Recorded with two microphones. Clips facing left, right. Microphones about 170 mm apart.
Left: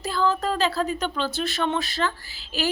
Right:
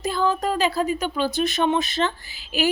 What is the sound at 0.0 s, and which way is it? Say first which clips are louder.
Speech: right 1 dB; 15° right (ahead or behind).